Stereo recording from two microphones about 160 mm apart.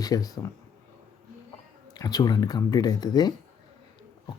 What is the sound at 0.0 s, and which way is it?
Speech, 20° left (ahead or behind).